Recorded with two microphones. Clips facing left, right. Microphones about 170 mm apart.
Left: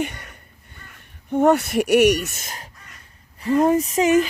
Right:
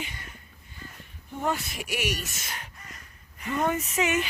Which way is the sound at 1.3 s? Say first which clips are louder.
Left 13 dB; 70° left (ahead or behind).